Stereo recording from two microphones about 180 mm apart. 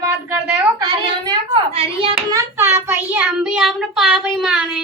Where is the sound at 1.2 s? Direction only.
30° right (ahead or behind).